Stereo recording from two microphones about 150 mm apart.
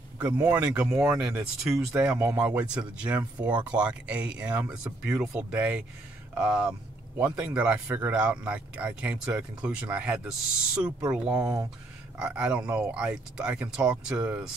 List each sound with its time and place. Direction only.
0.2 s speech: 10° right (ahead or behind)
12.2 s speech: 10° right (ahead or behind)